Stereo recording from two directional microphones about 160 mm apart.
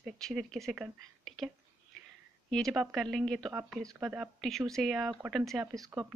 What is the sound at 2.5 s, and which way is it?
Speech, centre (ahead or behind).